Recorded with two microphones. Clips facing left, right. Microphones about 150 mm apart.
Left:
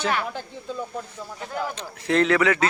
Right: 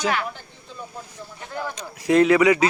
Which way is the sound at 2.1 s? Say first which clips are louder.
Right 4 dB; 10° right (ahead or behind).